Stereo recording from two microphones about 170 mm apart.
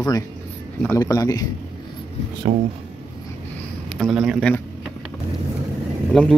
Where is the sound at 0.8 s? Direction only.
15° left (ahead or behind).